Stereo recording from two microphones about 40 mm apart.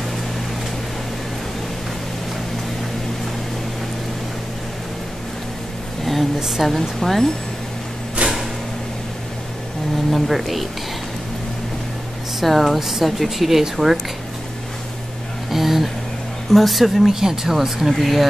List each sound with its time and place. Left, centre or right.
6.4 s speech: centre
6.7 s speech: centre
8.2 s a sound: right
10.1 s speech: centre
12.4 s speech: centre
15.5 s speech: centre